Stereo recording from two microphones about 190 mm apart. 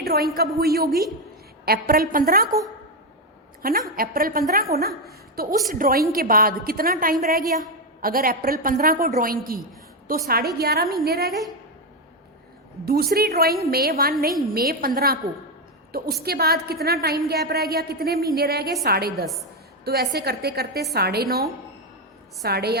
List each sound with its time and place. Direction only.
0.0 s a woman's voice: 55° right (ahead or behind)
3.6 s a woman's voice: 50° right (ahead or behind)
11.3 s a woman's voice: centre (ahead or behind)
12.8 s a woman's voice: 55° right (ahead or behind)
19.2 s a woman's voice: centre (ahead or behind)
19.8 s a woman's voice: 55° right (ahead or behind)